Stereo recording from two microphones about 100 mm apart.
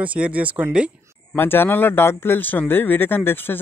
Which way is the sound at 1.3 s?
20° left (ahead or behind).